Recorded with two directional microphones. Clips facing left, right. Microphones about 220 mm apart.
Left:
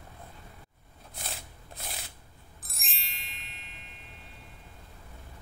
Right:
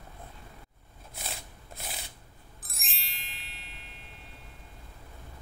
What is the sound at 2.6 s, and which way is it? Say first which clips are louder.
Music: even; centre (ahead or behind).